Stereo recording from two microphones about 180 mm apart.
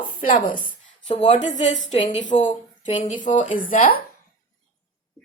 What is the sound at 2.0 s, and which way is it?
Speech, 30° left (ahead or behind).